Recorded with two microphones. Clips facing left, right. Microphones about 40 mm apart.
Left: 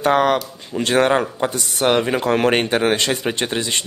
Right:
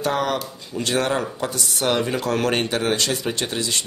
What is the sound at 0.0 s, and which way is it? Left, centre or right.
Speech, left.